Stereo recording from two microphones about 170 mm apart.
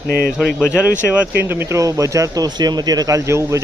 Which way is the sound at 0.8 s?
5° right (ahead or behind).